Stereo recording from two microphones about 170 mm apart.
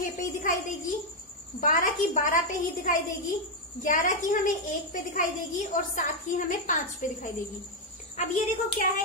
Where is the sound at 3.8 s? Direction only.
50° left (ahead or behind).